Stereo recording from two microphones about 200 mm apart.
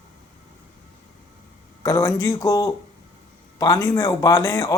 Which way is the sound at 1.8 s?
15° left (ahead or behind).